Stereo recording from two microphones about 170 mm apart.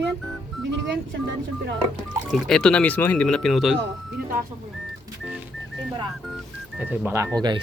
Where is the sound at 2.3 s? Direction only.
Centre (ahead or behind).